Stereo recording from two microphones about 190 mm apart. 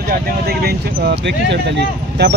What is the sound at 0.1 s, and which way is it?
Speech, 55° right (ahead or behind).